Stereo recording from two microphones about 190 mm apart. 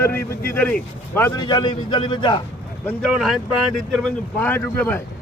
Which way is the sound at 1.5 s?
25° left (ahead or behind).